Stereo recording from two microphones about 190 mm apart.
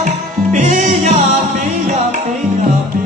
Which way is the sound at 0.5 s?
40° right (ahead or behind).